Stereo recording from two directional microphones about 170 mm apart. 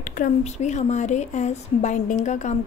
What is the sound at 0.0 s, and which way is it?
Speech, 50° left (ahead or behind).